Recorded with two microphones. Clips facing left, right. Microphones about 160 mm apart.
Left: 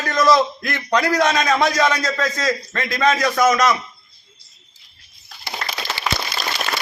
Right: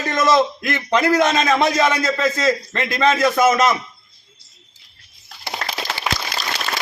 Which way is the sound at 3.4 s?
25° right (ahead or behind).